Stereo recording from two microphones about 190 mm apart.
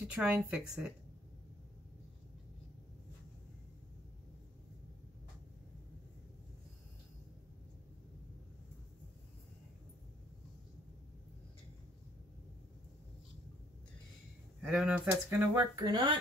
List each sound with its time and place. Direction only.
0.0 s speech: 5° right (ahead or behind)
14.6 s speech: 5° right (ahead or behind)
15.8 s speech: 25° right (ahead or behind)